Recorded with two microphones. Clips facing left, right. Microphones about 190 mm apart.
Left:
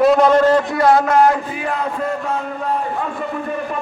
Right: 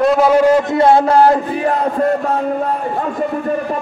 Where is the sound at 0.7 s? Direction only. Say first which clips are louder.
Right 3 dB; 25° right (ahead or behind).